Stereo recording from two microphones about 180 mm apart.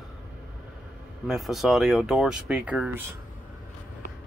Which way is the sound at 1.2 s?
Centre (ahead or behind).